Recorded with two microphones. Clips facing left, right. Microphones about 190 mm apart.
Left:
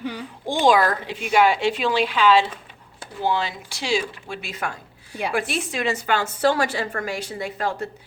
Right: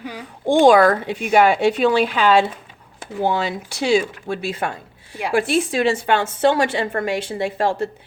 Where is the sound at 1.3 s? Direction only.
50° right (ahead or behind).